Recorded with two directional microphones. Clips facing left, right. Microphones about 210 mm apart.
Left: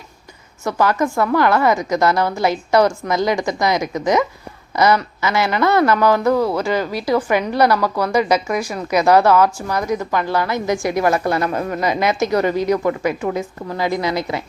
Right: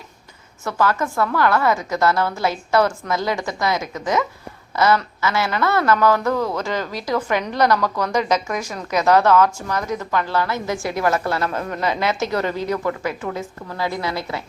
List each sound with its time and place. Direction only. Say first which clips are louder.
0.6 s a woman's voice: left 3 dB; 15° left (ahead or behind)